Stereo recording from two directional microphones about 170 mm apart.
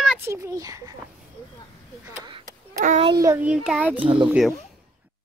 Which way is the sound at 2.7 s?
50° right (ahead or behind).